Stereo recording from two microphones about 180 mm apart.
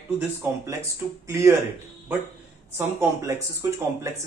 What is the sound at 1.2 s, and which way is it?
Speech, 15° right (ahead or behind).